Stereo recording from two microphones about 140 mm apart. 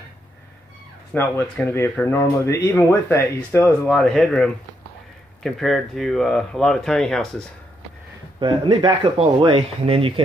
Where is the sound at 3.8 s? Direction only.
Centre (ahead or behind).